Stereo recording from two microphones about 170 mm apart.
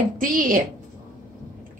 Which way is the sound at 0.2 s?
55° right (ahead or behind).